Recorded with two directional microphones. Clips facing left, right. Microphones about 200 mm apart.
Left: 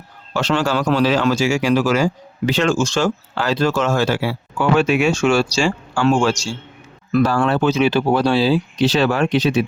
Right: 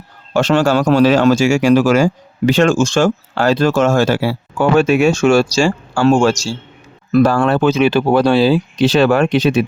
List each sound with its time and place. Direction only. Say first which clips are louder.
0.3 s speech: right 6 dB; 50° right (ahead or behind)